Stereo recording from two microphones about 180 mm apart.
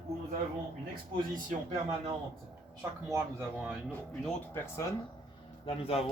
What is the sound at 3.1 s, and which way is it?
Speech, 15° right (ahead or behind).